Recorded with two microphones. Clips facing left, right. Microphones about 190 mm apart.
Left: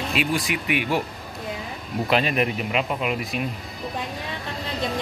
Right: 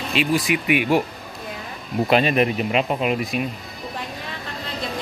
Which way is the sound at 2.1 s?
25° right (ahead or behind).